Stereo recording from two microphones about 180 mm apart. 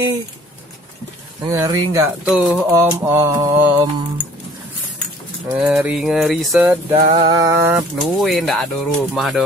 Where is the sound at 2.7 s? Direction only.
15° right (ahead or behind).